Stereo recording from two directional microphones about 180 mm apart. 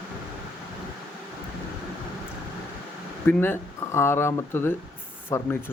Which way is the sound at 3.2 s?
10° left (ahead or behind).